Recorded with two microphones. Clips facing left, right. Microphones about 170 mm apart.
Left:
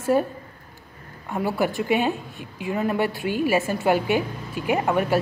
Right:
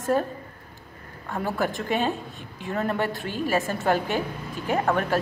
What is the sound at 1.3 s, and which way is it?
A woman's voice, 10° left (ahead or behind).